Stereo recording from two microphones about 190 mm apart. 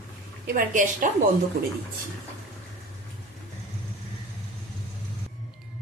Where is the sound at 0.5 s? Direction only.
45° right (ahead or behind).